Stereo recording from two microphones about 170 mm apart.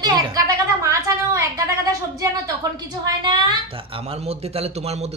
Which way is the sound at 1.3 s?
20° right (ahead or behind).